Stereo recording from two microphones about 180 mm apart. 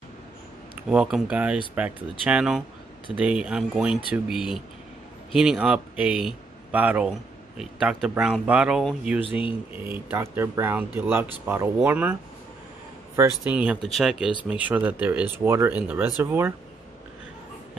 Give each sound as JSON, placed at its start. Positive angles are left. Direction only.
{"t": 0.8, "sound": "speech", "side_deg": -5}
{"t": 9.2, "sound": "speech", "side_deg": 30}
{"t": 9.8, "sound": "speech", "side_deg": -15}